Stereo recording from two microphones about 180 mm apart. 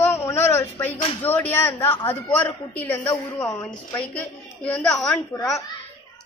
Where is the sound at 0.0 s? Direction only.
15° left (ahead or behind).